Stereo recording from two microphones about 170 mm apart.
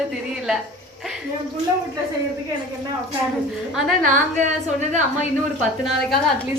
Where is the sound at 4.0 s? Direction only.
45° right (ahead or behind).